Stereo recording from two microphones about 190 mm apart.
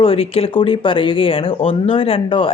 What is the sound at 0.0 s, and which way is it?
Speech, 30° left (ahead or behind).